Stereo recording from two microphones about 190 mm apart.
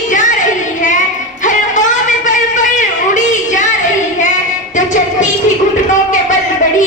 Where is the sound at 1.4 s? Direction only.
40° left (ahead or behind).